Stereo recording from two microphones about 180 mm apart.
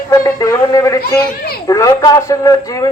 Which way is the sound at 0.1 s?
20° left (ahead or behind).